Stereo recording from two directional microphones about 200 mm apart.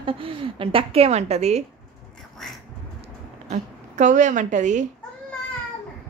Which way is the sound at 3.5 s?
40° right (ahead or behind).